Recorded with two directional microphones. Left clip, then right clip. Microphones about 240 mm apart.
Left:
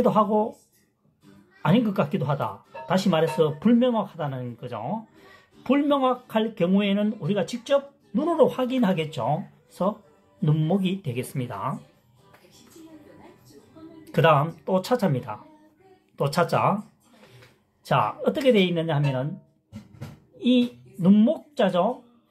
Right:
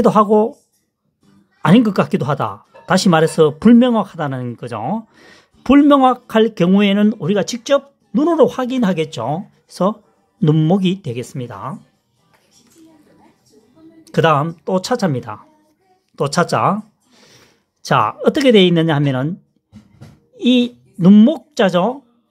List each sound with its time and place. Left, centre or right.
0.0 s speech: right
1.6 s speech: right
14.0 s speech: right
17.8 s speech: right
20.3 s speech: right